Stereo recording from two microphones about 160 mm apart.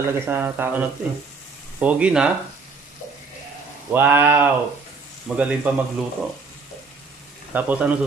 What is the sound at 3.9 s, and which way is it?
Speech, 15° right (ahead or behind).